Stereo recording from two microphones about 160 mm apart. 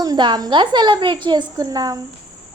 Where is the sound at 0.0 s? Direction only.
25° right (ahead or behind).